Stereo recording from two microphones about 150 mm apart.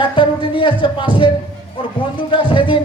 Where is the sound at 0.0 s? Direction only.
35° left (ahead or behind).